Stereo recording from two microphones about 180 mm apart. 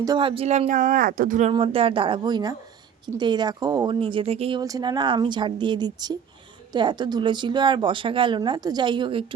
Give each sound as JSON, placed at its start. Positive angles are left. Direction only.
{"t": 0.0, "sound": "speech", "side_deg": -25}
{"t": 1.5, "sound": "a woman's voice", "side_deg": -30}
{"t": 4.6, "sound": "a woman's voice", "side_deg": -20}